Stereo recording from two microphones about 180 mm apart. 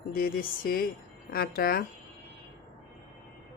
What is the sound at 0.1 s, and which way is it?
Speech, 55° left (ahead or behind).